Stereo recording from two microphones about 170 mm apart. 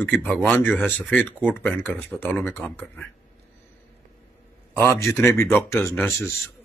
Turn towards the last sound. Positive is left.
turn(degrees=15)  # may be behind; listen again after turning